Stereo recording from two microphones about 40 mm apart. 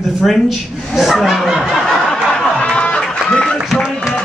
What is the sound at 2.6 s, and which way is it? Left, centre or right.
Music, left.